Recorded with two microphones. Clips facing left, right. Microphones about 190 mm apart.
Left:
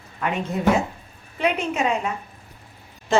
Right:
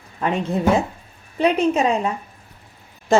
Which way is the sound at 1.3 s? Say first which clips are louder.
Right 6 dB; 35° right (ahead or behind).